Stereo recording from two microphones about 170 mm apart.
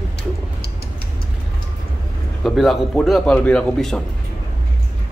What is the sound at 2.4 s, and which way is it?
A man's voice, centre (ahead or behind).